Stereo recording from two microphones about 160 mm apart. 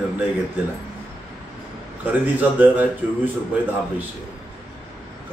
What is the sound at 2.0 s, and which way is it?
A man's voice, 10° right (ahead or behind).